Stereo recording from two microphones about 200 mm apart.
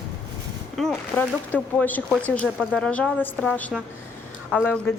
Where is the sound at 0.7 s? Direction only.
Centre (ahead or behind).